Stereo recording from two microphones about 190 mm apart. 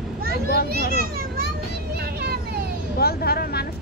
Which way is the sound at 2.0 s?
55° right (ahead or behind).